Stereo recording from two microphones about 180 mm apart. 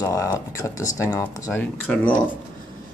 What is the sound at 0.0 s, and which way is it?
Speech, 15° left (ahead or behind).